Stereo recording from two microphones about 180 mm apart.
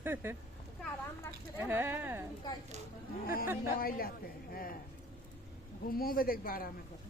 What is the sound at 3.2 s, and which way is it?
A woman's voice, 55° left (ahead or behind).